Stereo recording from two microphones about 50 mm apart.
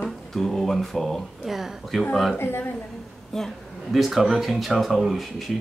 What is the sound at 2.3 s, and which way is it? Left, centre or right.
Speech, left.